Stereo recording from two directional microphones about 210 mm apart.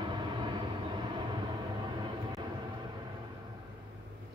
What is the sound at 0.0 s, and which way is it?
Vehicle, 20° right (ahead or behind).